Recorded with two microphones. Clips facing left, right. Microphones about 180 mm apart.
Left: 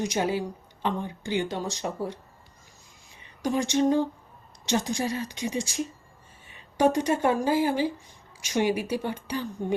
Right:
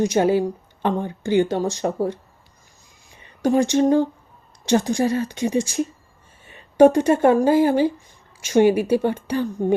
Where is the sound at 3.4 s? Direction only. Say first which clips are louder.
Right 7 dB; 50° right (ahead or behind).